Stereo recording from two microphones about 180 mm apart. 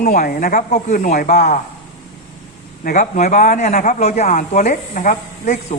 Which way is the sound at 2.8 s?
45° left (ahead or behind).